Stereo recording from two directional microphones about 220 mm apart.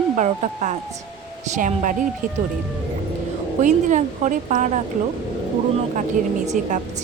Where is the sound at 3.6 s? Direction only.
35° right (ahead or behind).